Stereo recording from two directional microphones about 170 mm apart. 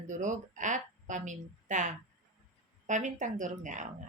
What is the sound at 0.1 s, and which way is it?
Speech, 50° right (ahead or behind).